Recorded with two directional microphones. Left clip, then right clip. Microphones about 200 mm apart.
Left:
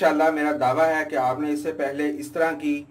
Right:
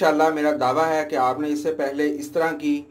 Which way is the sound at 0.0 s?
30° right (ahead or behind).